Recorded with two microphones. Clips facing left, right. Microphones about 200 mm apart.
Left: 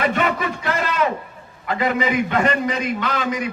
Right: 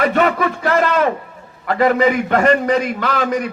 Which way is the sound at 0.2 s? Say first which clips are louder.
Right 6 dB; 50° right (ahead or behind).